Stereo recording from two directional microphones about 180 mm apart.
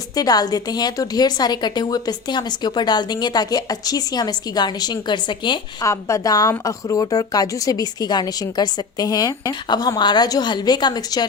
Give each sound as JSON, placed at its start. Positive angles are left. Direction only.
{"t": 0.2, "sound": "a woman's voice", "side_deg": 20}